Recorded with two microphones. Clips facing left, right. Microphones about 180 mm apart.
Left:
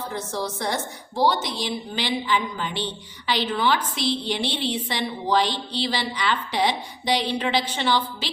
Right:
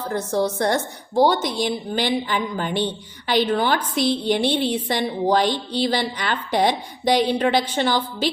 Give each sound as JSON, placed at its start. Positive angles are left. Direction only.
{"t": 0.1, "sound": "a woman's voice", "side_deg": -55}